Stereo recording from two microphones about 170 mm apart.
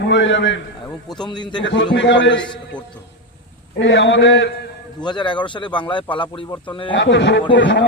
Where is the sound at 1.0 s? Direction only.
25° left (ahead or behind).